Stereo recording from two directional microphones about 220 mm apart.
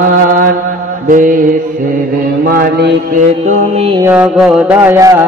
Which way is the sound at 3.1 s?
35° right (ahead or behind).